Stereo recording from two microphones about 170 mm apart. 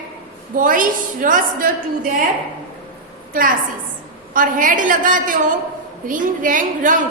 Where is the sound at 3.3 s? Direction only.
55° right (ahead or behind).